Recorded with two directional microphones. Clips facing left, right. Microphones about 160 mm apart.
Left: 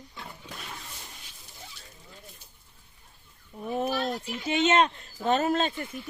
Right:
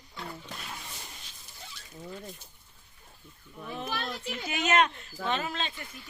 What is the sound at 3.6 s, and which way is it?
Speech, 45° left (ahead or behind).